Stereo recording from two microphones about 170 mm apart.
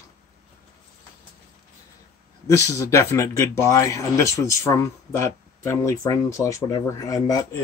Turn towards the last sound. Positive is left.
turn(degrees=20)  # may be behind; listen again after turning